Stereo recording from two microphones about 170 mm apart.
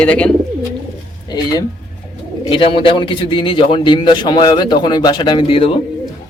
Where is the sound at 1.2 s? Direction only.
25° left (ahead or behind).